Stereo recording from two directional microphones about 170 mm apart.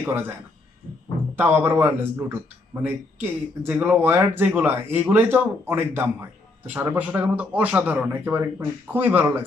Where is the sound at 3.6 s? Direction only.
10° right (ahead or behind).